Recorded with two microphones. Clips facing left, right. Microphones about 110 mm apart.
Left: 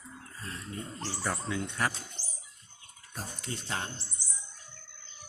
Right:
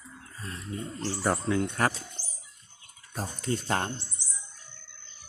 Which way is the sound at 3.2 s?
45° right (ahead or behind).